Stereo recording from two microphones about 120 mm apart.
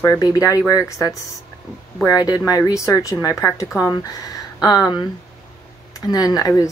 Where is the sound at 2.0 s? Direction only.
30° left (ahead or behind).